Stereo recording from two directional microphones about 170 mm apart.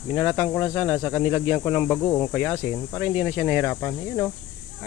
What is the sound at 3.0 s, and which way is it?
Speech, 10° right (ahead or behind).